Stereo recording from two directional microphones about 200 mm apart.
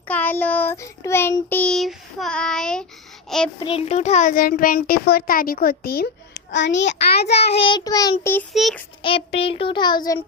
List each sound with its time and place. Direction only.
0.1 s child singing: 10° left (ahead or behind)
3.2 s speech: centre (ahead or behind)
3.6 s a child's voice: 30° left (ahead or behind); by 7.3 s 60° left (ahead or behind)
7.3 s child singing: 25° left (ahead or behind)
8.5 s child singing: centre (ahead or behind)
9.0 s child singing: 25° left (ahead or behind)